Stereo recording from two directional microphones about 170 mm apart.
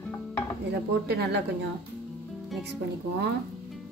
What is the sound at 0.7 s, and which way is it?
A woman's voice, 75° right (ahead or behind).